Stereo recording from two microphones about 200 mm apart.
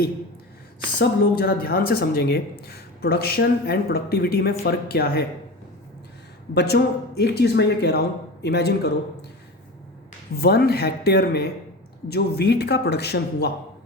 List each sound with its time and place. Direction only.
0.9 s speech: 50° left (ahead or behind)
6.5 s speech: 55° left (ahead or behind)
10.3 s speech: 50° left (ahead or behind)